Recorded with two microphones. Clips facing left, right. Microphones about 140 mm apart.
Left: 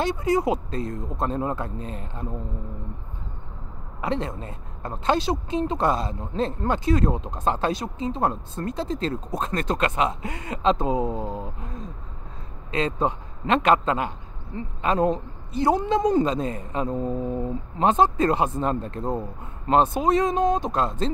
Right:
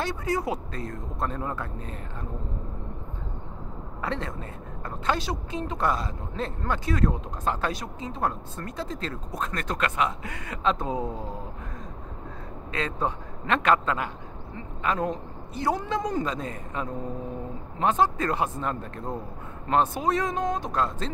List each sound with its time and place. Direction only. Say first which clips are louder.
0.0 s speech: left 6 dB; 20° left (ahead or behind)
4.0 s speech: left 5 dB; 20° left (ahead or behind)
12.7 s speech: left 5 dB; 20° left (ahead or behind)